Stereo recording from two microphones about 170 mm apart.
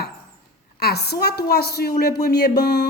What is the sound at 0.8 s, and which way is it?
A woman's voice, 70° left (ahead or behind).